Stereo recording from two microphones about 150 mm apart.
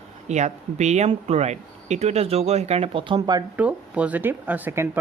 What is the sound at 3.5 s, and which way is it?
Speech, 10° right (ahead or behind).